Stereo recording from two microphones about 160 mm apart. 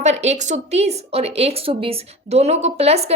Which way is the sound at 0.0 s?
45° right (ahead or behind).